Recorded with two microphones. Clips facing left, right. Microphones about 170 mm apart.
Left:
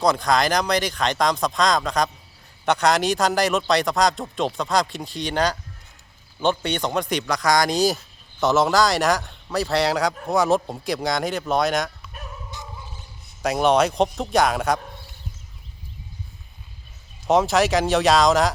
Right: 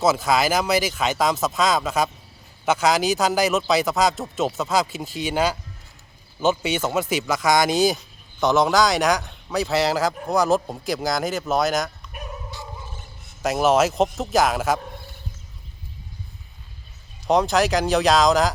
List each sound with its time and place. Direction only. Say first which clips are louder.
0.0 s speech: even; 5° right (ahead or behind)
13.4 s speech: even; centre (ahead or behind)
17.2 s speech: left 1 dB; centre (ahead or behind)